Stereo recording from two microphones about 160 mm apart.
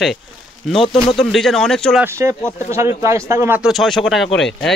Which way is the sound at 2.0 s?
20° right (ahead or behind).